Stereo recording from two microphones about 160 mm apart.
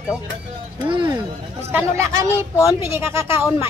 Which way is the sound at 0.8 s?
30° right (ahead or behind).